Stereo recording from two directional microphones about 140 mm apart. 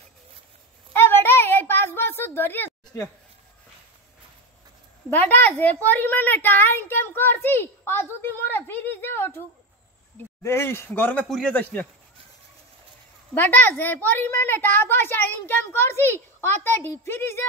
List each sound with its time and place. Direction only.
0.9 s a sound: 15° left (ahead or behind)
5.1 s a woman's voice: 15° left (ahead or behind)
10.4 s a woman's voice: 20° left (ahead or behind)
13.3 s a woman's voice: 15° left (ahead or behind)